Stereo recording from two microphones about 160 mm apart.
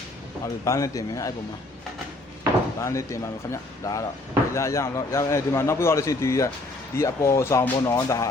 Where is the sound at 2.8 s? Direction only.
20° left (ahead or behind).